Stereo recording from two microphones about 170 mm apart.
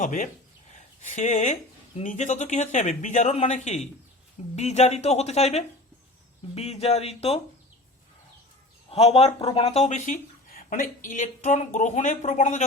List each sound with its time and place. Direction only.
0.0 s speech: 50° left (ahead or behind)
8.9 s speech: 35° left (ahead or behind)
10.5 s speech: 55° left (ahead or behind)